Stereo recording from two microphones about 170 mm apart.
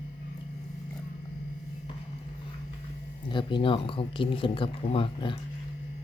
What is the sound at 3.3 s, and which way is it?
Speech, 30° left (ahead or behind).